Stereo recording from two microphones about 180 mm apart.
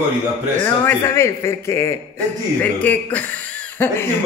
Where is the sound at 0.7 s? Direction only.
15° left (ahead or behind).